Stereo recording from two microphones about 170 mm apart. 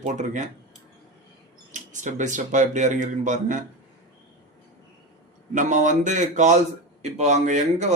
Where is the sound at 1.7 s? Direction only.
45° right (ahead or behind).